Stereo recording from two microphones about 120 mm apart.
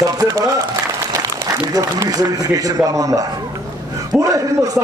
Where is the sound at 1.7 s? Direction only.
30° right (ahead or behind).